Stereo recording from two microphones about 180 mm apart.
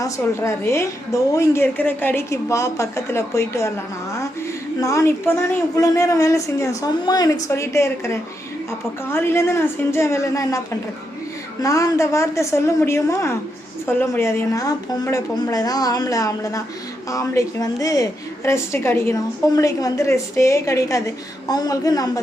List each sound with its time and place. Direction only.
0.0 s a woman's voice: 15° left (ahead or behind)
4.8 s a woman's voice: 15° left (ahead or behind)
11.6 s a woman's voice: 15° left (ahead or behind)